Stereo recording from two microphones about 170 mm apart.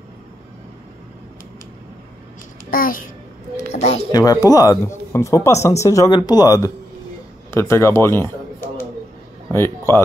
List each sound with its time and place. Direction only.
2.7 s a child's voice: 55° left (ahead or behind)
3.6 s a woman's voice: 40° left (ahead or behind)
4.1 s a man's voice: 20° left (ahead or behind)
9.5 s speech: 15° left (ahead or behind)